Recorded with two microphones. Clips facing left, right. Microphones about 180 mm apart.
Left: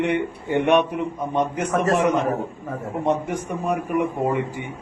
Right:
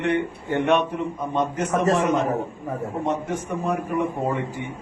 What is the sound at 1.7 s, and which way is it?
Speech, 15° right (ahead or behind).